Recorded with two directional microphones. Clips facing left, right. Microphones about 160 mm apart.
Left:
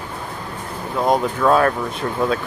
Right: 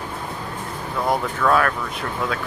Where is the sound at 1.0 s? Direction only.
20° left (ahead or behind).